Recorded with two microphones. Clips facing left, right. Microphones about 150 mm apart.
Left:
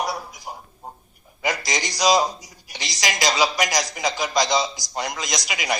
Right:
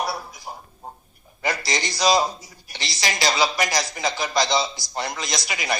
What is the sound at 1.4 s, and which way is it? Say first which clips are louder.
A man's voice: even; 15° left (ahead or behind).